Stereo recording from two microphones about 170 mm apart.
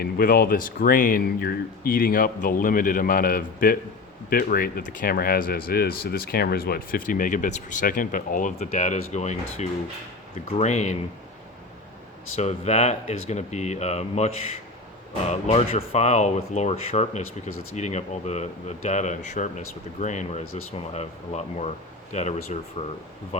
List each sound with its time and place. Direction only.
0.0 s speech: 60° left (ahead or behind); by 10.9 s 40° left (ahead or behind)
12.4 s speech: 40° left (ahead or behind)